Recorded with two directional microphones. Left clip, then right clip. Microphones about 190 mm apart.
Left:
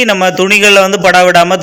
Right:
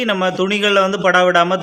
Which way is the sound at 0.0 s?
20° left (ahead or behind).